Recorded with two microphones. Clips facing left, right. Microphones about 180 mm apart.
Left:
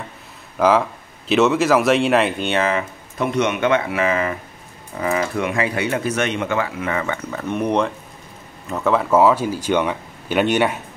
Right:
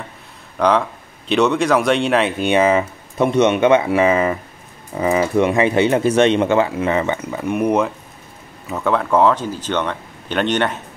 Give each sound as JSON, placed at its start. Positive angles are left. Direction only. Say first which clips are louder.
{"t": 0.6, "sound": "speech", "louder": "even", "side_deg": 5}
{"t": 2.4, "sound": "speech", "louder": "right 5 dB", "side_deg": -15}
{"t": 7.2, "sound": "speech", "louder": "right 3 dB", "side_deg": -10}